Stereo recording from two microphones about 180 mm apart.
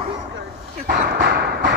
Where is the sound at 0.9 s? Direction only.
60° right (ahead or behind).